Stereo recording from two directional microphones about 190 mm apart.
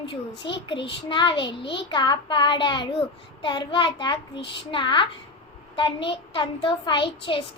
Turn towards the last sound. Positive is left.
turn(degrees=25)  # may be behind; listen again after turning